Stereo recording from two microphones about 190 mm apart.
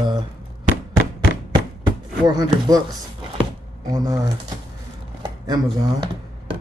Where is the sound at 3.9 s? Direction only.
20° right (ahead or behind).